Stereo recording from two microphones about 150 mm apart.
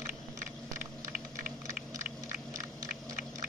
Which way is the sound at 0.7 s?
60° right (ahead or behind).